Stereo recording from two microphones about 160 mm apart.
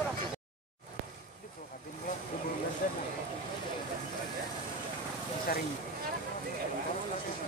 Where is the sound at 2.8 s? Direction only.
60° left (ahead or behind).